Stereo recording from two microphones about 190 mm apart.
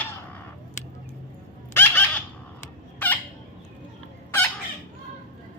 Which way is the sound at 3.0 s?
10° left (ahead or behind).